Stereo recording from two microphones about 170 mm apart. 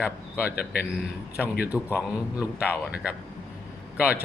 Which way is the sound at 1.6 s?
10° right (ahead or behind).